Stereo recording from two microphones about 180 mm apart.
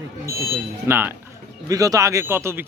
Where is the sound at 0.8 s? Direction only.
15° right (ahead or behind).